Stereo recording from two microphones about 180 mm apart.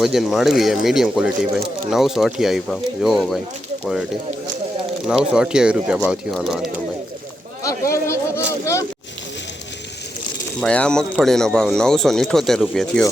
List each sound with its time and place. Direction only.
0.0 s speech: centre (ahead or behind)
5.0 s speech: 5° right (ahead or behind)
7.6 s a sound: 15° left (ahead or behind)
10.6 s speech: 5° left (ahead or behind)